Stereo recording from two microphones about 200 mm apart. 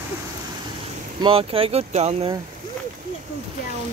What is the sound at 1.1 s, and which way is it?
Speech, 25° right (ahead or behind).